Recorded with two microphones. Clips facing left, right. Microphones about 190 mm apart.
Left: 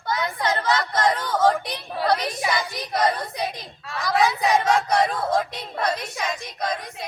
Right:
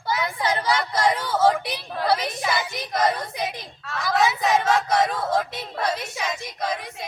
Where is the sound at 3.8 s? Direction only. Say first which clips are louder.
Left 1 dB; centre (ahead or behind).